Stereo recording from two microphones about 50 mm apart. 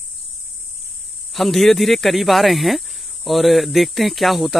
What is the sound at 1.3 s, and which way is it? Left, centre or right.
Speech, centre.